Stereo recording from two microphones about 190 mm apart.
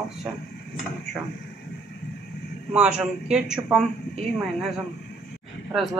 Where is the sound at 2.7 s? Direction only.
5° right (ahead or behind).